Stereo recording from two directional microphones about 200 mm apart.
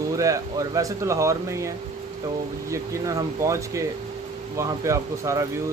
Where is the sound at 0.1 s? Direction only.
15° right (ahead or behind).